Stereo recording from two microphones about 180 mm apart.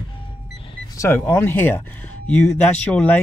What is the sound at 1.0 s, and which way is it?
Speech, 15° left (ahead or behind).